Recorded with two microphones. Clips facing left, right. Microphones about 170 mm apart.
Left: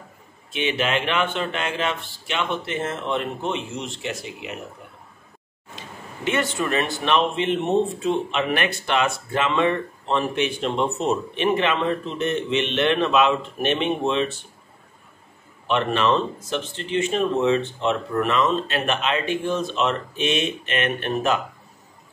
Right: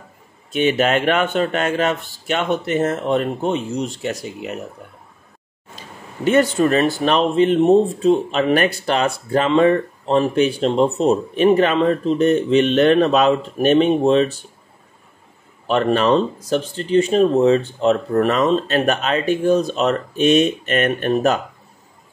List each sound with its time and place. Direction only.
0.5 s speech: 45° right (ahead or behind)
5.8 s speech: 40° right (ahead or behind)
15.6 s speech: 40° right (ahead or behind)